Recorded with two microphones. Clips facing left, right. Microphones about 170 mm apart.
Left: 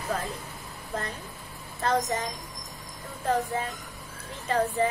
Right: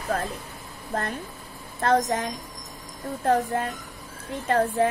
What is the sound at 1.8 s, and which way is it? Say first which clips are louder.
A woman's voice: right 4 dB; 50° right (ahead or behind).